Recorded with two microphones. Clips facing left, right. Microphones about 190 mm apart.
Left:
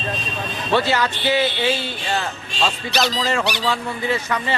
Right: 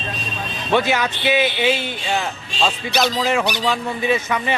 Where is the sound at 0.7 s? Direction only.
15° right (ahead or behind).